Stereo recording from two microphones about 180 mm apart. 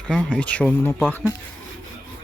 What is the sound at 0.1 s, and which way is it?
Speech, 5° left (ahead or behind).